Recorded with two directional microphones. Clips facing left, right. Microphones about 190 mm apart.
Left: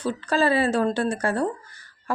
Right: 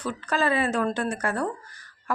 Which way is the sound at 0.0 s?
30° left (ahead or behind).